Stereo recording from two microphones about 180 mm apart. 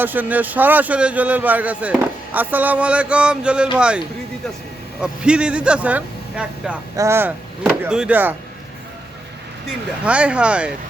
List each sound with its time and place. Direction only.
0.0 s a man's voice: 10° right (ahead or behind)
10.0 s a man's voice: 5° right (ahead or behind)